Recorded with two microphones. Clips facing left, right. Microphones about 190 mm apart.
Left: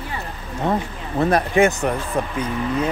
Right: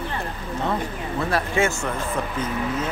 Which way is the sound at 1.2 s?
20° left (ahead or behind).